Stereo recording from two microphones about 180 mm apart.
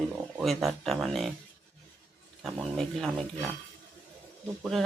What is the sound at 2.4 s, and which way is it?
Speech, centre (ahead or behind).